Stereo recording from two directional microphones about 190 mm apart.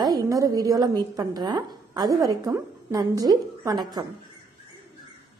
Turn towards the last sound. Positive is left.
turn(degrees=-20)  # may be behind; listen again after turning